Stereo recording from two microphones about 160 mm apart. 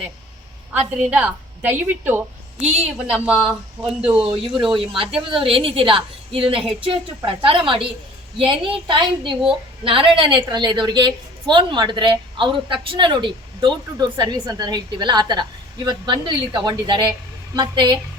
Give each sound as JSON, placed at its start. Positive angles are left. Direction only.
{"t": 0.7, "sound": "a woman's voice", "side_deg": -10}
{"t": 4.7, "sound": "a woman's voice", "side_deg": -35}